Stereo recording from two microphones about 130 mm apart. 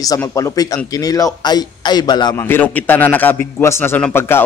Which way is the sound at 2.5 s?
15° left (ahead or behind).